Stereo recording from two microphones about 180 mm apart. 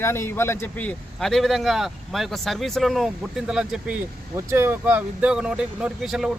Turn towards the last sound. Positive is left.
turn(degrees=-5)  # may be behind; listen again after turning